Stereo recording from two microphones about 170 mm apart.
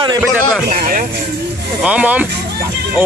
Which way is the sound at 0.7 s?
50° right (ahead or behind).